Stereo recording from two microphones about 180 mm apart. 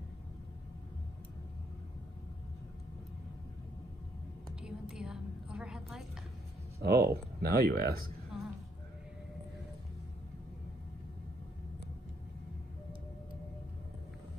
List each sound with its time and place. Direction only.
4.6 s a sound: 5° right (ahead or behind)
6.8 s speech: 65° right (ahead or behind)
8.3 s music: 5° right (ahead or behind)